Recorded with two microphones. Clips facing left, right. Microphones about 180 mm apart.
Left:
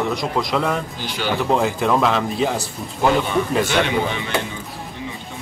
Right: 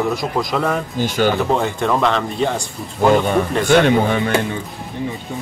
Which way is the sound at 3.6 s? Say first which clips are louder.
Right 6 dB; 50° right (ahead or behind).